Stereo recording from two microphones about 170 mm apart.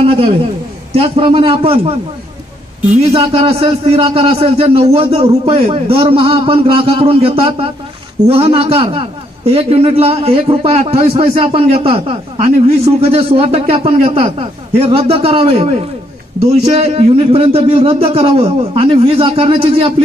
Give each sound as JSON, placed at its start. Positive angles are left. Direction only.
{"t": 0.0, "sound": "a sound", "side_deg": -35}
{"t": 0.9, "sound": "a man's voice", "side_deg": -35}
{"t": 3.0, "sound": "a man's voice", "side_deg": -35}